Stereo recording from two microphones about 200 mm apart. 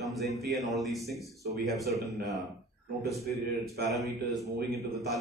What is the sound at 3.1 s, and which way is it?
A man's voice, centre (ahead or behind).